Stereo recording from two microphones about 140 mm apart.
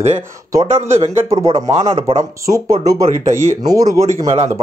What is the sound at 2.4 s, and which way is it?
Speech, 20° right (ahead or behind).